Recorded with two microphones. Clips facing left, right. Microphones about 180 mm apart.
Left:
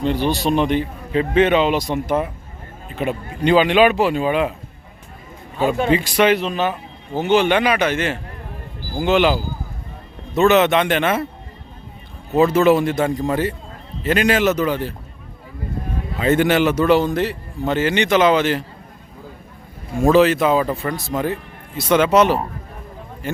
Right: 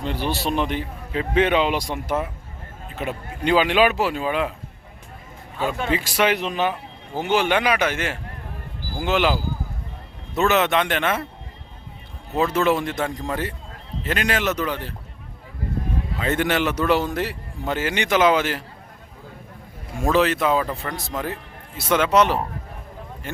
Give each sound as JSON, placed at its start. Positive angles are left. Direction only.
{"t": 0.0, "sound": "a man's voice", "side_deg": -5}
{"t": 5.5, "sound": "speech", "side_deg": 15}
{"t": 5.9, "sound": "a man's voice", "side_deg": -5}
{"t": 12.4, "sound": "speech", "side_deg": 5}
{"t": 16.2, "sound": "a man's voice", "side_deg": 5}
{"t": 20.1, "sound": "speech", "side_deg": 5}